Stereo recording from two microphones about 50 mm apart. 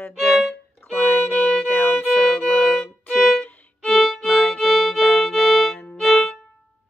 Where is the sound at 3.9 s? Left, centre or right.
Centre.